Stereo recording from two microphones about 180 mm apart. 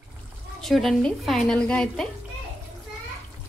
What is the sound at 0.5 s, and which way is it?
A woman's voice, centre (ahead or behind).